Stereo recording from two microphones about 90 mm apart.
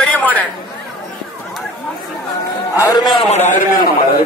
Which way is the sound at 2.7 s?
35° left (ahead or behind).